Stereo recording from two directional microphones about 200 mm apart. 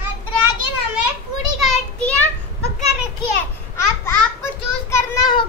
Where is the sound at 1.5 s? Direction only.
5° left (ahead or behind).